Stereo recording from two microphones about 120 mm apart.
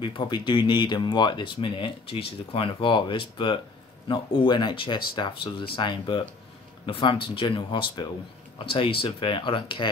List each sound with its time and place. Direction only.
0.0 s speech: 40° left (ahead or behind)